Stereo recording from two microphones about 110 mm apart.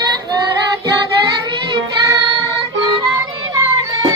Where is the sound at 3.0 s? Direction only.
30° right (ahead or behind).